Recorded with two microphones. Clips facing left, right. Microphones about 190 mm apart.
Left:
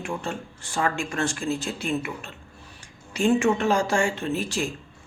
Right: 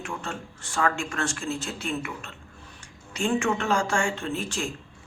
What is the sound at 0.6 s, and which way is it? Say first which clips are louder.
Speech: even; 35° left (ahead or behind).